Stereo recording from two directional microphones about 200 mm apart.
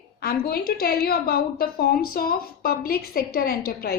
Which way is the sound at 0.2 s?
50° left (ahead or behind).